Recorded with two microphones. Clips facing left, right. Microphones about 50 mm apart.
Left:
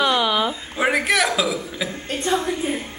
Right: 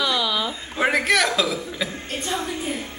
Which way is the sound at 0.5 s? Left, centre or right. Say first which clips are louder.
Left 1 dB; centre.